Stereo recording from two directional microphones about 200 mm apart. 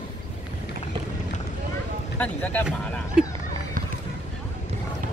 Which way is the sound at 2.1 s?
5° left (ahead or behind).